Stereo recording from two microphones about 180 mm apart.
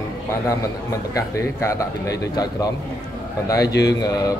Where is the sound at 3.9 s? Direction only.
20° left (ahead or behind).